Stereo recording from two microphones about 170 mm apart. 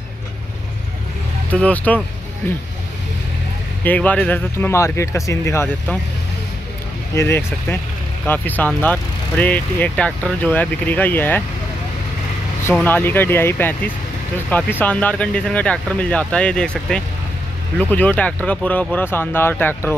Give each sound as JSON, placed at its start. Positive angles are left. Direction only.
{"t": 1.5, "sound": "speech", "side_deg": 10}
{"t": 3.8, "sound": "speech", "side_deg": 10}
{"t": 7.2, "sound": "speech", "side_deg": 15}
{"t": 12.8, "sound": "speech", "side_deg": 10}